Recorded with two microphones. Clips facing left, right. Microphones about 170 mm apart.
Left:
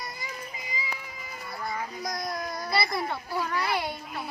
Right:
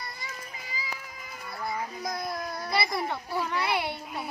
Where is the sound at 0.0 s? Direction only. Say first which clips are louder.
Left 2 dB; 20° left (ahead or behind).